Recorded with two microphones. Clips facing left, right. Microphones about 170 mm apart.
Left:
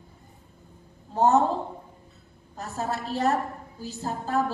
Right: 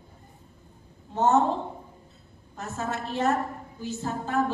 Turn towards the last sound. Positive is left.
turn(degrees=35)  # may be behind; listen again after turning